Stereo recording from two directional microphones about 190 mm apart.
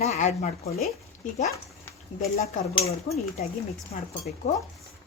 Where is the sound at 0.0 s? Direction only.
35° left (ahead or behind).